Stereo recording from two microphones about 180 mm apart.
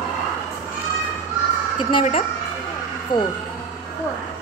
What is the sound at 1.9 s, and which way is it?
Speech, 30° left (ahead or behind).